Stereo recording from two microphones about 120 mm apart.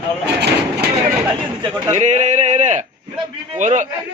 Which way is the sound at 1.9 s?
80° right.